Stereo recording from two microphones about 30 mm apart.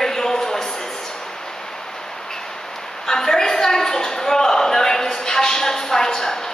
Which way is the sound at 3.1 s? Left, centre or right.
Centre.